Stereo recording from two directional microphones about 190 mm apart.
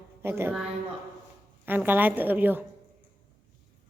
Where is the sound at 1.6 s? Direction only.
10° right (ahead or behind).